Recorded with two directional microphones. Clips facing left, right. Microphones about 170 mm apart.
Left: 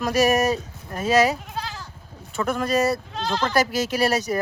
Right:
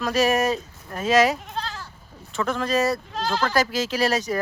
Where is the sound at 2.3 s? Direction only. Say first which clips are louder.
Left 1 dB; 10° left (ahead or behind).